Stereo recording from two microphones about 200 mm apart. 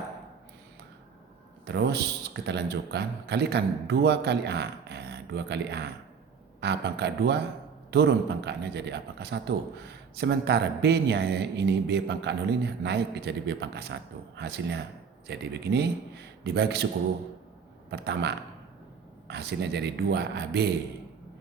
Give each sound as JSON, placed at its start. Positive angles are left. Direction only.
{"t": 1.6, "sound": "a man's voice", "side_deg": -55}
{"t": 17.9, "sound": "a man's voice", "side_deg": -55}